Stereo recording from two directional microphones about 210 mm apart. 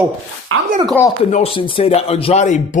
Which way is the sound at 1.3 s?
25° left (ahead or behind).